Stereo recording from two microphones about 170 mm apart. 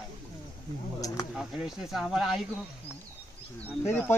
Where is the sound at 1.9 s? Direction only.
Centre (ahead or behind).